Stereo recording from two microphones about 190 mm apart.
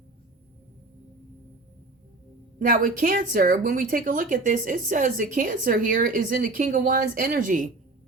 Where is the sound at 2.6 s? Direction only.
45° right (ahead or behind).